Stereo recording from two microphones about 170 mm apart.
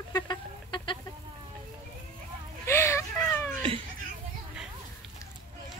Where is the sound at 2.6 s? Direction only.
15° left (ahead or behind).